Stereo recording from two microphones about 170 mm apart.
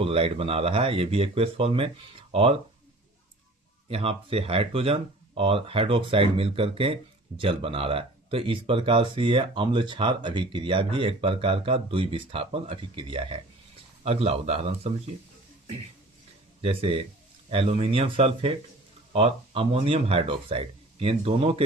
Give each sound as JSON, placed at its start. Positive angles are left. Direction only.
{"t": 0.0, "sound": "speech", "side_deg": -35}
{"t": 3.8, "sound": "speech", "side_deg": -35}
{"t": 16.6, "sound": "speech", "side_deg": -35}